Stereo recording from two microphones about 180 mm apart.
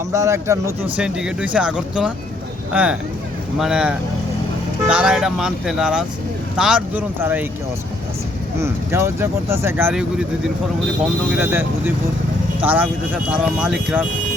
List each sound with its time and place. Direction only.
0.1 s speech: 15° right (ahead or behind)
1.0 s speech: 5° right (ahead or behind)
8.6 s speech: 15° right (ahead or behind)
11.3 s speech: 10° right (ahead or behind)
12.6 s speech: 10° right (ahead or behind)